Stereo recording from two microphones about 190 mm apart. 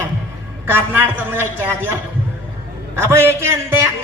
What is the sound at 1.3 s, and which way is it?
Speech, 10° right (ahead or behind).